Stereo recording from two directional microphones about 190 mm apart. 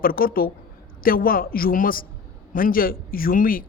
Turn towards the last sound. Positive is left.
turn(degrees=50)  # may be behind; listen again after turning